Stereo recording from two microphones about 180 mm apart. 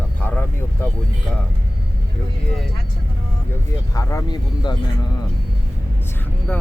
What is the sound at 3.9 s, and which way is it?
Speech, 15° left (ahead or behind).